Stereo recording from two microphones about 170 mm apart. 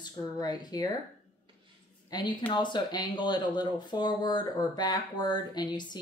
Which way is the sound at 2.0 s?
25° left (ahead or behind).